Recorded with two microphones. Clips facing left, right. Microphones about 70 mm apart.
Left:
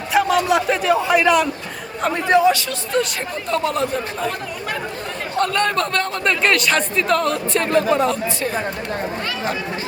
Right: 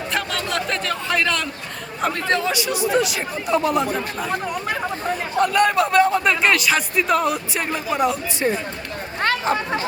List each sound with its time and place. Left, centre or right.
0.1 s a sound: centre
2.2 s speech: centre
2.5 s a man's voice: centre
3.0 s a man's voice: centre
5.4 s a man's voice: centre